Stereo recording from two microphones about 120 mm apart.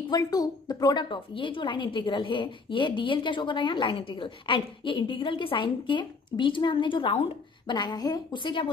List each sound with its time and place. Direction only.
0.1 s a woman's voice: 30° left (ahead or behind)